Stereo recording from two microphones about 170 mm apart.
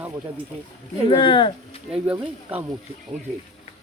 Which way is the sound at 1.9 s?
10° right (ahead or behind).